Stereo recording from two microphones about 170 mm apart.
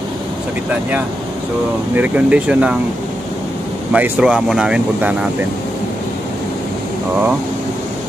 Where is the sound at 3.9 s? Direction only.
10° right (ahead or behind).